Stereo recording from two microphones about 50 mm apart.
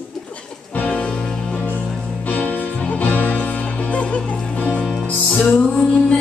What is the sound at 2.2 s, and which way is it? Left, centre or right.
Music, left.